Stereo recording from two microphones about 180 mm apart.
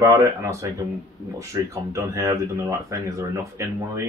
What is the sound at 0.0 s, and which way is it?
Speech, 15° right (ahead or behind).